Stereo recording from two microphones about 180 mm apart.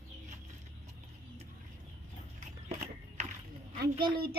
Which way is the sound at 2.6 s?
40° right (ahead or behind).